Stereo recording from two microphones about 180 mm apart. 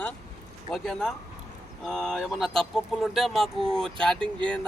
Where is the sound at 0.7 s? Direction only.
5° left (ahead or behind).